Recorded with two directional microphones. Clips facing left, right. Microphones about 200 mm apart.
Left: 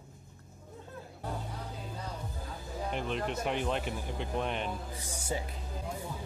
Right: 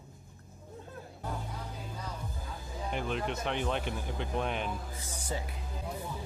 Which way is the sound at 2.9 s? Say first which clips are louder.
Right 1 dB; centre (ahead or behind).